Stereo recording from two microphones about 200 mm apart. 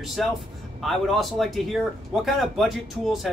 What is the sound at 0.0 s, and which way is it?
Speech, centre (ahead or behind).